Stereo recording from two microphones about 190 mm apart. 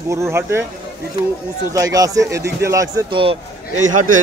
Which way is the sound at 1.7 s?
20° right (ahead or behind).